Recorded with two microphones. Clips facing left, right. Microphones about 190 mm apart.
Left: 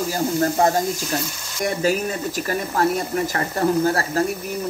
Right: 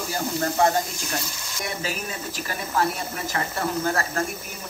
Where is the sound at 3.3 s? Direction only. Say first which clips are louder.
Left 5 dB; 35° left (ahead or behind).